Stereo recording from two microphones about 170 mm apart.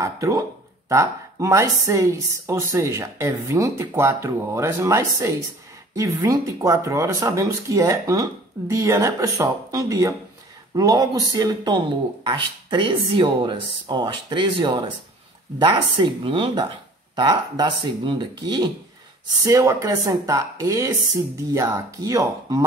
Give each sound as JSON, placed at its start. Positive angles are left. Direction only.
{"t": 0.0, "sound": "speech", "side_deg": -20}